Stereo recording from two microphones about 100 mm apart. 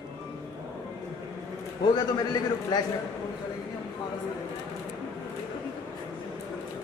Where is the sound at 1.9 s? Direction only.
45° left (ahead or behind).